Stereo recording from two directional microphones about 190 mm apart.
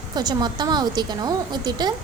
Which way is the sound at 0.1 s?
20° right (ahead or behind).